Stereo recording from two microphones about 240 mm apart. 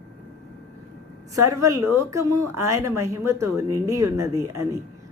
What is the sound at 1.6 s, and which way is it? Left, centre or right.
Speech, centre.